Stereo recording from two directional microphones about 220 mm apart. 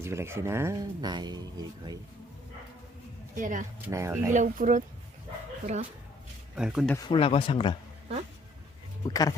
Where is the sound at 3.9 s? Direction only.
15° right (ahead or behind).